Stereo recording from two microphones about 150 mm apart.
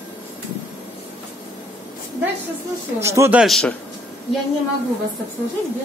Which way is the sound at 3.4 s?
5° left (ahead or behind).